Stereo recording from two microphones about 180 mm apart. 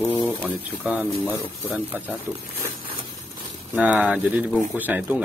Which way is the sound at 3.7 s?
10° right (ahead or behind).